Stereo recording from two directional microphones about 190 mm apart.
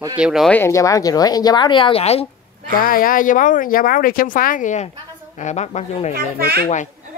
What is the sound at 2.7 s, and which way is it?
Speech, 50° left (ahead or behind).